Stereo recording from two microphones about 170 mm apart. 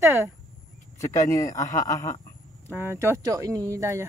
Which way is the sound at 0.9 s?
20° left (ahead or behind).